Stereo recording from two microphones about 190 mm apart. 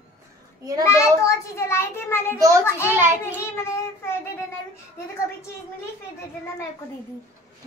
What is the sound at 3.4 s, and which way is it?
Speech, 15° left (ahead or behind).